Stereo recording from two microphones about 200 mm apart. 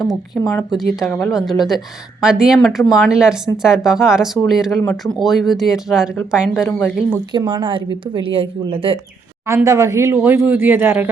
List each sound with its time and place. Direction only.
0.4 s speech: 15° left (ahead or behind)
0.8 s speech: centre (ahead or behind)
7.3 s a woman's voice: 25° right (ahead or behind)
9.5 s speech: 15° right (ahead or behind)